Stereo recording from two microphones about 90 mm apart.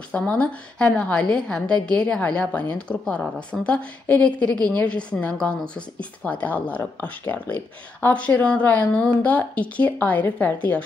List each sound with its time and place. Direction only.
0.1 s a woman's voice: 15° left (ahead or behind)